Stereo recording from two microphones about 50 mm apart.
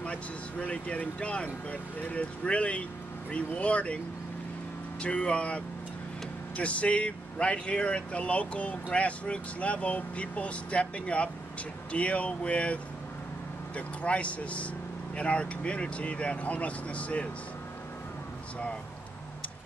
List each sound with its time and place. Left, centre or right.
0.0 s speech: left
5.0 s speech: left